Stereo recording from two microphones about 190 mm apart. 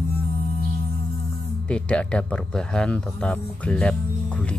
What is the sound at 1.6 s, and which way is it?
Speech, 5° left (ahead or behind).